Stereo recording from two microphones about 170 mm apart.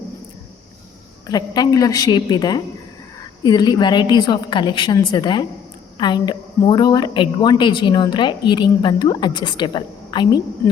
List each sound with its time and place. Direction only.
1.3 s a woman's voice: 25° left (ahead or behind)